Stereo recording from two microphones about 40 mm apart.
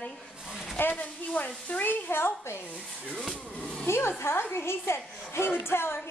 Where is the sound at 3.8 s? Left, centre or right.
Left.